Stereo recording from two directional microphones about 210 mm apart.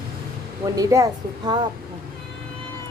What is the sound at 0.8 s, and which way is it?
Speech, 15° right (ahead or behind).